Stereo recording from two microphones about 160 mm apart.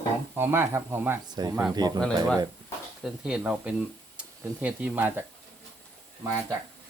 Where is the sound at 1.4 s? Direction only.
25° right (ahead or behind).